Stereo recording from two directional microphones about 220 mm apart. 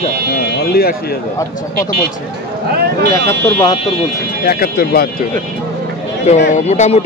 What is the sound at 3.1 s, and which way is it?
Speech, 15° left (ahead or behind).